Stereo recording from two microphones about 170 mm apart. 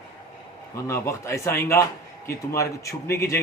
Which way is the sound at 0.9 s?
15° left (ahead or behind).